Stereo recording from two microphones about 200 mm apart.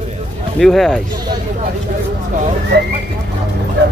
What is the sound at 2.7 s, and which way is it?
Horse, 60° right (ahead or behind).